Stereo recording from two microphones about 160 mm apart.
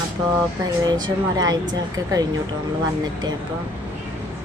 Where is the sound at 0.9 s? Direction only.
25° right (ahead or behind).